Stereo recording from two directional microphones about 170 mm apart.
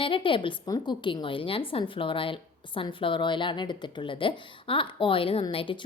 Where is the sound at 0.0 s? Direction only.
30° left (ahead or behind).